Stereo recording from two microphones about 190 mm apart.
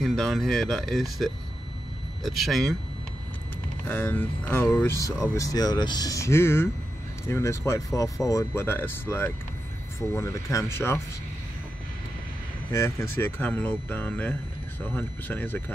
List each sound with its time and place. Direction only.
0.0 s speech: centre (ahead or behind)
3.8 s speech: 10° left (ahead or behind)
12.7 s speech: 15° left (ahead or behind)